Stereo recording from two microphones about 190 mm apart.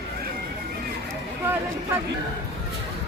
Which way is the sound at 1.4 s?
10° right (ahead or behind).